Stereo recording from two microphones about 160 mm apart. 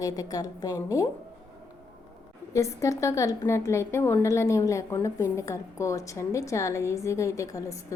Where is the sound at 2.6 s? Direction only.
20° left (ahead or behind).